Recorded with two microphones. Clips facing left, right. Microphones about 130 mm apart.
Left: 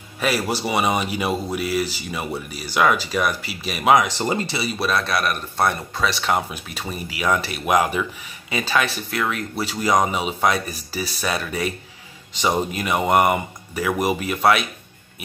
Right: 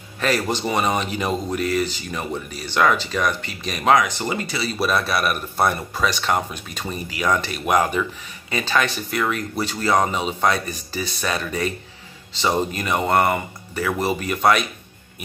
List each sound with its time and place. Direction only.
0.2 s speech: 10° left (ahead or behind)
4.2 s speech: 30° left (ahead or behind)
4.7 s a man's voice: centre (ahead or behind)